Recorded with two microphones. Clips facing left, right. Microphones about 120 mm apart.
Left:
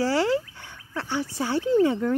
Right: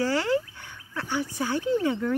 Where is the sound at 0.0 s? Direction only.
25° left (ahead or behind).